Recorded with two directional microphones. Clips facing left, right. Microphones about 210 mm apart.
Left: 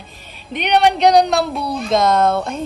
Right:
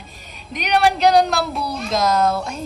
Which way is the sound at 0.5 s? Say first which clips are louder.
Left 3 dB; centre (ahead or behind).